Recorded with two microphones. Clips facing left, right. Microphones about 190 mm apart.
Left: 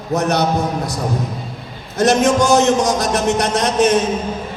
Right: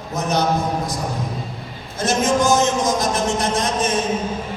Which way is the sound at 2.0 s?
70° left (ahead or behind).